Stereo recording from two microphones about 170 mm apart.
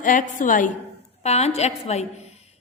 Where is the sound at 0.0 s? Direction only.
50° left (ahead or behind).